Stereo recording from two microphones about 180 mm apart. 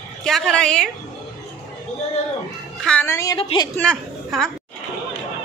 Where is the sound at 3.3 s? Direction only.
25° left (ahead or behind).